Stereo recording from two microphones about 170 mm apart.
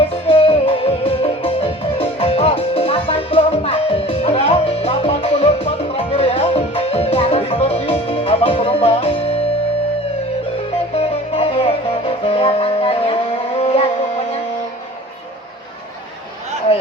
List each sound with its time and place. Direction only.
0.0 s music: 35° left (ahead or behind)
10.9 s music: 35° left (ahead or behind)
13.6 s a sound: 35° left (ahead or behind)